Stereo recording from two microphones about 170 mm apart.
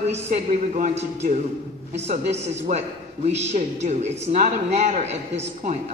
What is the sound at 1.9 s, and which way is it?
Speech, 40° right (ahead or behind).